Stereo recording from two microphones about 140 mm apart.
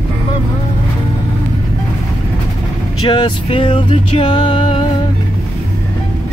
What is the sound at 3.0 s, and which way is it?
Music, 35° left (ahead or behind).